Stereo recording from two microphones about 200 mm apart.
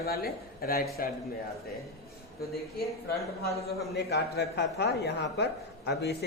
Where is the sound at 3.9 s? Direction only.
55° left (ahead or behind).